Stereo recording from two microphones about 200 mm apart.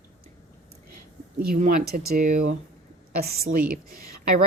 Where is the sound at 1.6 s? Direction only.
40° right (ahead or behind).